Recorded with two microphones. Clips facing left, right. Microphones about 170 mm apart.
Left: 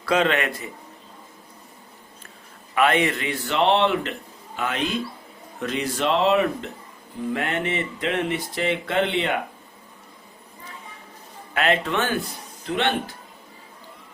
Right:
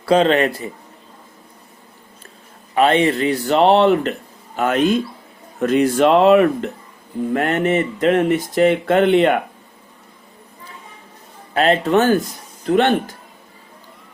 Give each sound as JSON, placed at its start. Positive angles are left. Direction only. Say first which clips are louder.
{"t": 0.0, "sound": "speech", "louder": "right 7 dB", "side_deg": -30}
{"t": 2.7, "sound": "speech", "louder": "right 6 dB", "side_deg": -30}
{"t": 11.5, "sound": "speech", "louder": "right 7 dB", "side_deg": -35}